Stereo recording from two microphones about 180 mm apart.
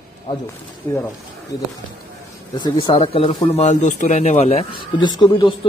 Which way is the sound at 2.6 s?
25° left (ahead or behind).